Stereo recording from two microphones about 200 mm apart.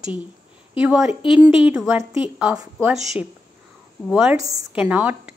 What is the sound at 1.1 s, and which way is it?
Speech, 25° left (ahead or behind).